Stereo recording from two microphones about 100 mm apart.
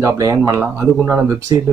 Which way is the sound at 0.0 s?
35° right (ahead or behind).